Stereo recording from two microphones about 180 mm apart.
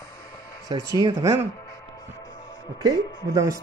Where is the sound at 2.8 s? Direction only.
20° right (ahead or behind).